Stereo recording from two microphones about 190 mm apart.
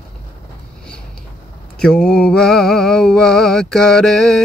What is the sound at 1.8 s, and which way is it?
Mantra, 5° left (ahead or behind).